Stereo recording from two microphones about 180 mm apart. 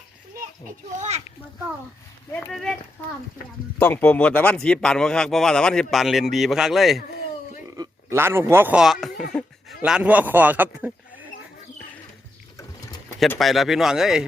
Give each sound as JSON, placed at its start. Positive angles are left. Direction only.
{"t": 0.9, "sound": "a child's voice", "side_deg": -40}
{"t": 2.3, "sound": "speech", "side_deg": 0}
{"t": 3.8, "sound": "speech", "side_deg": 10}
{"t": 7.8, "sound": "a man's voice", "side_deg": -15}
{"t": 13.1, "sound": "speech", "side_deg": 5}